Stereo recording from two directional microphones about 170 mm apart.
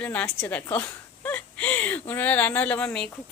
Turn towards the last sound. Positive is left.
turn(degrees=5)  # may be behind; listen again after turning